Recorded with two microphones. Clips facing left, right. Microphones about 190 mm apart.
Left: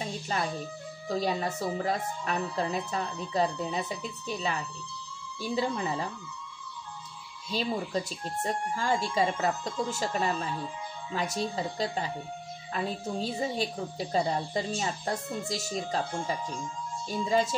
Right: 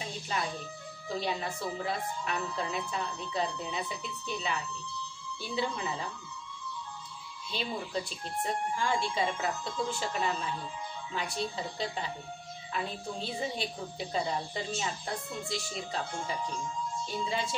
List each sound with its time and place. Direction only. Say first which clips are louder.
1.0 s speech: left 4 dB; 40° left (ahead or behind)
7.5 s speech: left 5 dB; 40° left (ahead or behind)
8.7 s speech: left 5 dB; 40° left (ahead or behind)
17.3 s music: left 10 dB; 45° left (ahead or behind)